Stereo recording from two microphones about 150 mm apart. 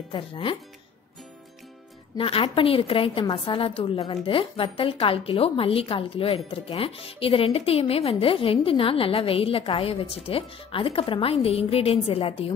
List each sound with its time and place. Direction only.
0.1 s a woman's voice: 35° left (ahead or behind)
2.1 s a woman's voice: 35° left (ahead or behind)